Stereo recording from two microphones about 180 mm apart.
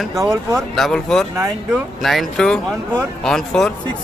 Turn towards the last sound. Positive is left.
turn(degrees=0)  # may be behind; listen again after turning